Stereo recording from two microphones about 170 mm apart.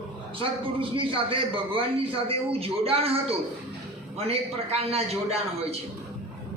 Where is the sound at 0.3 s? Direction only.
30° right (ahead or behind).